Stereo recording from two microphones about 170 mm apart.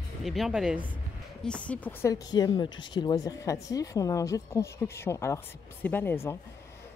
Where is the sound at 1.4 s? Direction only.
5° left (ahead or behind).